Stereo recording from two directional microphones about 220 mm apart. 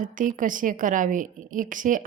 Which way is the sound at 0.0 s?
35° right (ahead or behind).